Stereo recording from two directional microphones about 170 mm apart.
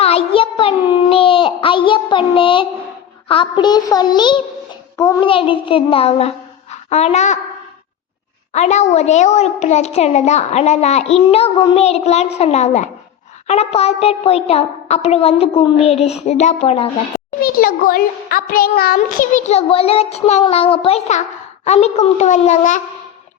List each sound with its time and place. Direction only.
0.0 s a sound: 35° left (ahead or behind)
3.2 s a child's voice: 30° left (ahead or behind)
8.5 s a child's voice: 45° left (ahead or behind)
17.4 s a child's voice: 60° left (ahead or behind)